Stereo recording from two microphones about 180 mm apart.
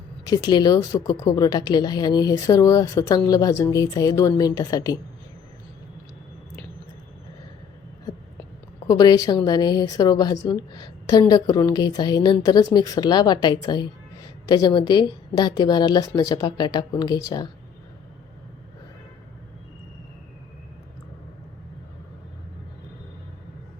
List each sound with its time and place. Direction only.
0.3 s a woman's voice: 25° left (ahead or behind)
8.9 s a woman's voice: 20° left (ahead or behind)